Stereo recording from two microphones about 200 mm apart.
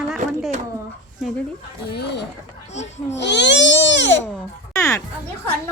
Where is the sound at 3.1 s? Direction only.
60° left (ahead or behind).